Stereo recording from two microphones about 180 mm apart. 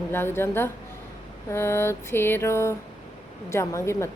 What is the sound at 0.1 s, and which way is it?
Speech, 10° left (ahead or behind).